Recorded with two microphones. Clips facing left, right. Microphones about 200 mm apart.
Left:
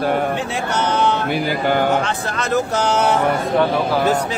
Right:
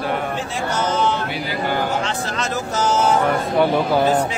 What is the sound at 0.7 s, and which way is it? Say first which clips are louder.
Speech: left 2 dB; 65° left (ahead or behind).